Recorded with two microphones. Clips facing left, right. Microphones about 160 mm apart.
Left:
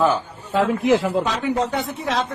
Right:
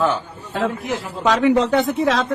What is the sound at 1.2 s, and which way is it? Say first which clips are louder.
Speech: right 6 dB; 90° right.